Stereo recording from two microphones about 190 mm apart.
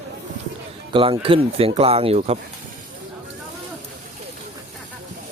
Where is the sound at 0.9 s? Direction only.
25° right (ahead or behind).